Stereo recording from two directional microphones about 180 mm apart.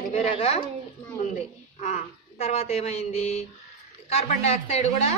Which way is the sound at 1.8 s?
40° left (ahead or behind).